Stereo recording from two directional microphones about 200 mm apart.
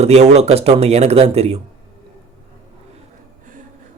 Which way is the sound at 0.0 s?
35° right (ahead or behind).